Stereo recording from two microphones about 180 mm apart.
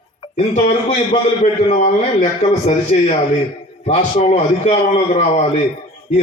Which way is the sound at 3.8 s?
35° left (ahead or behind).